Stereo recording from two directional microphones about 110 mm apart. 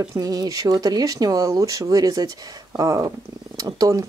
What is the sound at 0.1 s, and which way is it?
Speech, 35° right (ahead or behind).